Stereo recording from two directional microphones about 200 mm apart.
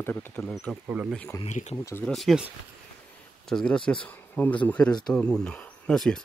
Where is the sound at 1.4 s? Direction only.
35° left (ahead or behind).